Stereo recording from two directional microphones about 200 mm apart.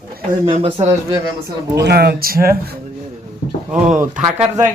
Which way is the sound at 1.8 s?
55° right (ahead or behind).